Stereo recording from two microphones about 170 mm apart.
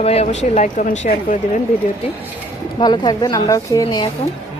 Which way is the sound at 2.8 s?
25° left (ahead or behind).